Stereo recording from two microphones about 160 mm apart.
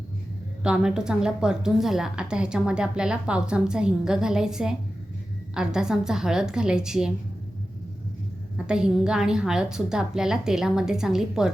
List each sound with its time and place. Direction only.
0.6 s a woman's voice: 5° right (ahead or behind)
8.5 s a woman's voice: 5° right (ahead or behind)